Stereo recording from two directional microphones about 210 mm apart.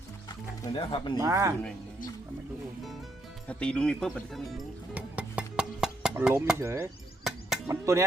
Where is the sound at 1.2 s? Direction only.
15° right (ahead or behind).